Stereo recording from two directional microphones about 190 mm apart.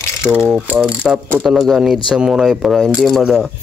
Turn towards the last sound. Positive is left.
turn(degrees=0)  # may be behind; listen again after turning